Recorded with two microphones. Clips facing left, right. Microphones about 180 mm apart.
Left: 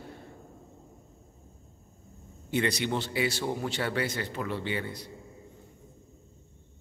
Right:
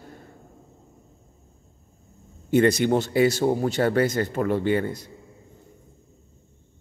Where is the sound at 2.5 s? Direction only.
45° right (ahead or behind).